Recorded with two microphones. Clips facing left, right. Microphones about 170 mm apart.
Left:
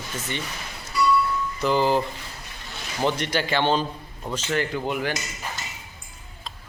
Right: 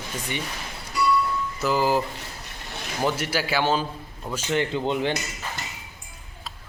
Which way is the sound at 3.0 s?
5° right (ahead or behind).